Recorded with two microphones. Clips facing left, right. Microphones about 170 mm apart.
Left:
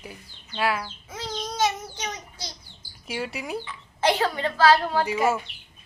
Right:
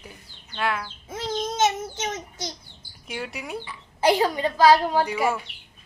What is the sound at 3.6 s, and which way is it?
Speech, 10° right (ahead or behind).